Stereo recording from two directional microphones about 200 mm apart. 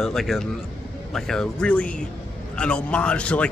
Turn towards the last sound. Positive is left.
turn(degrees=5)  # may be behind; listen again after turning